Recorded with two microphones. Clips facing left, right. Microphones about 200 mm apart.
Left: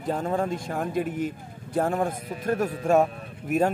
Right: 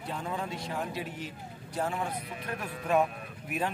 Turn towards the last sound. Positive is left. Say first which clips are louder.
# left 10 dB
turn(degrees=45)  # may be behind; listen again after turning